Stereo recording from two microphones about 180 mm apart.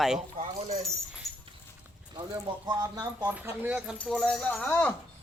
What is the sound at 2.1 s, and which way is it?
Speech, 20° right (ahead or behind).